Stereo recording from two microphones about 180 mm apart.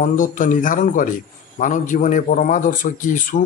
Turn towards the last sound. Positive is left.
turn(degrees=45)  # may be behind; listen again after turning